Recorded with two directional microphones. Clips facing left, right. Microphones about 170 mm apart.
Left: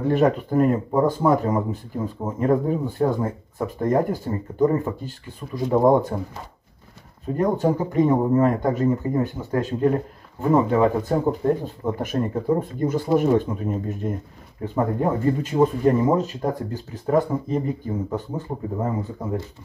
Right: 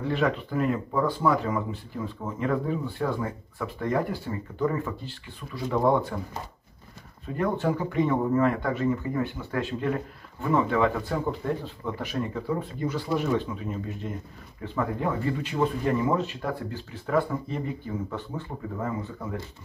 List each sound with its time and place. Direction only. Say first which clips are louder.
0.0 s speech: left 7 dB; 45° left (ahead or behind)
7.5 s speech: left 5 dB; 40° left (ahead or behind)
18.3 s speech: left 6 dB; 25° left (ahead or behind)